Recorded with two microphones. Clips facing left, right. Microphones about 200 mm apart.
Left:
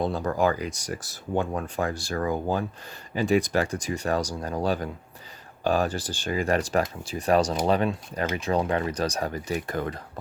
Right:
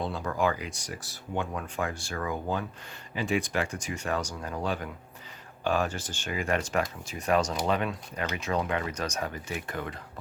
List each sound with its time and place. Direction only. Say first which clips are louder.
0.0 s speech: left 4 dB; 40° left (ahead or behind)